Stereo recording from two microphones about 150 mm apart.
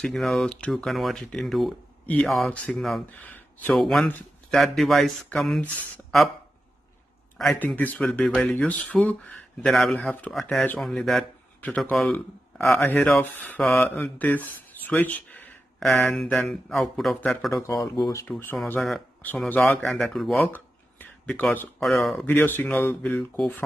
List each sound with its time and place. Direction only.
0.0 s speech: centre (ahead or behind)
3.7 s speech: centre (ahead or behind)
7.5 s speech: 10° left (ahead or behind)
17.9 s speech: 30° left (ahead or behind)
18.8 s speech: centre (ahead or behind)
20.5 s a sound: 10° left (ahead or behind)
22.2 s speech: 10° left (ahead or behind)